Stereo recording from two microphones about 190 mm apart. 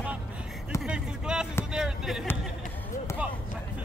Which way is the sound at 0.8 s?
5° right (ahead or behind).